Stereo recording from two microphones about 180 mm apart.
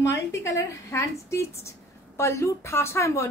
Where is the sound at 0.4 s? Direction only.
15° left (ahead or behind).